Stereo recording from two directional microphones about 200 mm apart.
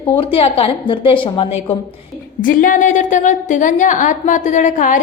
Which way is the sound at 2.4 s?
40° left (ahead or behind).